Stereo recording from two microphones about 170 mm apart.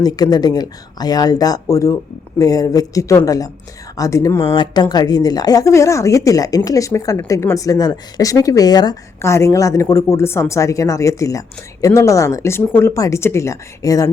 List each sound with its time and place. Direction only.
0.0 s speech: 25° left (ahead or behind)